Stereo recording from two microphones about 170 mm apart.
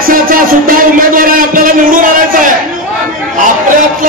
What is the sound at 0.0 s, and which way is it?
Music, 55° right (ahead or behind).